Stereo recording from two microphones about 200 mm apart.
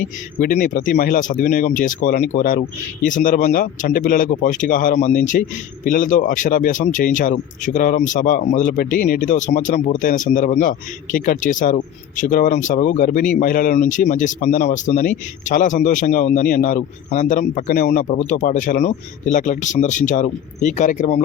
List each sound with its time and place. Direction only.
0.3 s speech: 40° left (ahead or behind)